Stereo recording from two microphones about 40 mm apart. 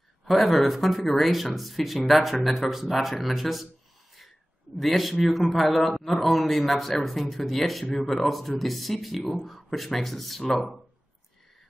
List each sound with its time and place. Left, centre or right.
0.2 s a man's voice: centre
4.7 s a man's voice: centre